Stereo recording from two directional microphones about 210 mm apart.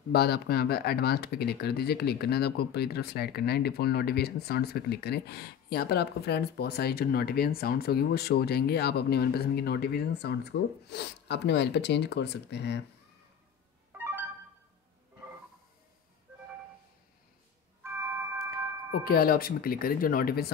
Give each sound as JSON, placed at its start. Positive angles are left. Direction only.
{"t": 0.1, "sound": "speech", "side_deg": 50}
{"t": 13.9, "sound": "music", "side_deg": -10}
{"t": 17.8, "sound": "a sound", "side_deg": -10}
{"t": 18.9, "sound": "speech", "side_deg": 45}